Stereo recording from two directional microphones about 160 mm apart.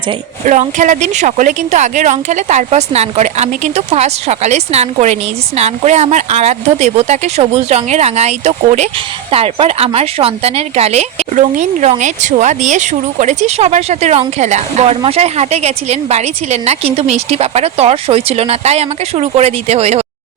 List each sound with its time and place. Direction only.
0.4 s a woman's voice: 50° right (ahead or behind)